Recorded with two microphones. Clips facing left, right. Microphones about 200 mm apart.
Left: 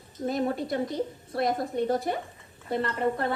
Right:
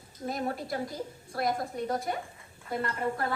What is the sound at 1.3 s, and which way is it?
Speech, 25° left (ahead or behind).